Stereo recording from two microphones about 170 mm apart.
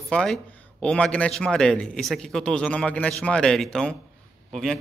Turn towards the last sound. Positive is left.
turn(degrees=0)  # may be behind; listen again after turning